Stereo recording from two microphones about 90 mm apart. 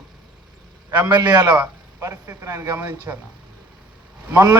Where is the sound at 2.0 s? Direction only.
35° right (ahead or behind).